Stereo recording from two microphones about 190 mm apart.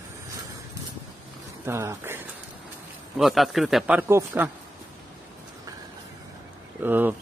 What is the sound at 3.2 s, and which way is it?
A man's voice, centre (ahead or behind).